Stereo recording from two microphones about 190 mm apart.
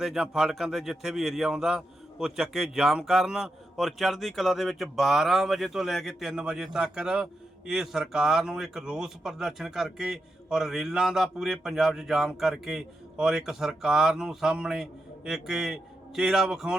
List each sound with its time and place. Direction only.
0.0 s a man's voice: centre (ahead or behind)